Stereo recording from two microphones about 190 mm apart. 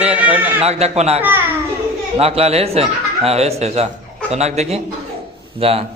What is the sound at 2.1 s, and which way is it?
A man's voice, 30° right (ahead or behind).